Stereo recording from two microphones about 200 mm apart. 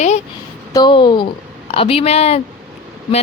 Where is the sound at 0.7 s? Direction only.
20° left (ahead or behind).